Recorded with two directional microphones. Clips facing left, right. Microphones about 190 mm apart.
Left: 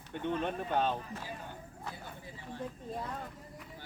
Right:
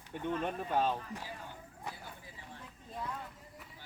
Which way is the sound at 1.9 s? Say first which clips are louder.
Even; 15° right (ahead or behind).